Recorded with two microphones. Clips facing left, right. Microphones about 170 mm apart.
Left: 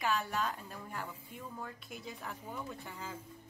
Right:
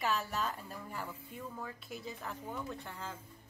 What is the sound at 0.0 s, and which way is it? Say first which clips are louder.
Speech: left 1 dB; centre (ahead or behind).